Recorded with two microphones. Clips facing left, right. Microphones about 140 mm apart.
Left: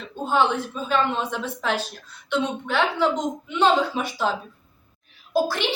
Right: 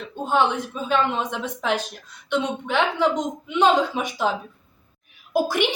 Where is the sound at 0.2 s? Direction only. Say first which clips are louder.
Even; 15° right (ahead or behind).